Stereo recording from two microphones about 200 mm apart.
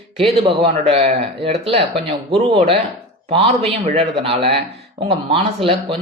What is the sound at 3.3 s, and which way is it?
Speech, 30° right (ahead or behind).